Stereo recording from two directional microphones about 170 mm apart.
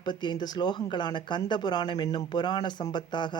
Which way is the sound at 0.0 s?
25° left (ahead or behind).